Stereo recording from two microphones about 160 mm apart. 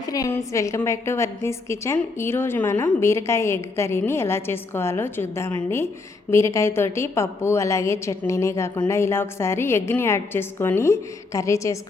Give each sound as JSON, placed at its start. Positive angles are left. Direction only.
{"t": 0.0, "sound": "a woman's voice", "side_deg": 20}